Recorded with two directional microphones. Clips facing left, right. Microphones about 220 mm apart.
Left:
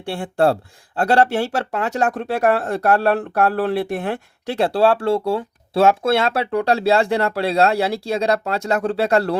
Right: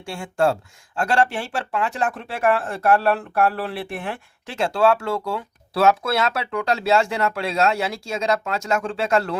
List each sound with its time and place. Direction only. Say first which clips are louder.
0.0 s speech: left 3 dB; 35° left (ahead or behind)